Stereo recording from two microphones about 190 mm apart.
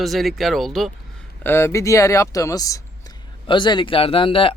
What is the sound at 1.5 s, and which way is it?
Speech, 15° left (ahead or behind).